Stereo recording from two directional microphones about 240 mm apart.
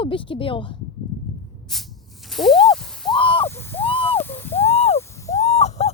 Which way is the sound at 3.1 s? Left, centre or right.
Left.